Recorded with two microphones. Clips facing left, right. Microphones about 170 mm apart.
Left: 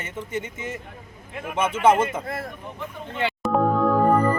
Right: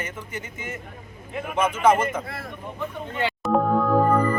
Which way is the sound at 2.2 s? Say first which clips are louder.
Left 5 dB; 50° left (ahead or behind).